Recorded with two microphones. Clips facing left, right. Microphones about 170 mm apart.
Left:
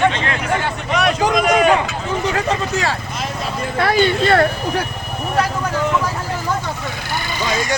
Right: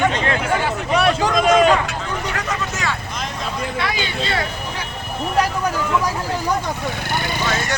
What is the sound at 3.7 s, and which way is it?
Speech, 50° left (ahead or behind).